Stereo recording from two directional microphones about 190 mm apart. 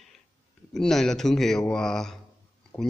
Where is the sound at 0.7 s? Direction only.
Centre (ahead or behind).